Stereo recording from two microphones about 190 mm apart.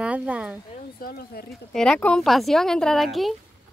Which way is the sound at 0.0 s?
5° right (ahead or behind).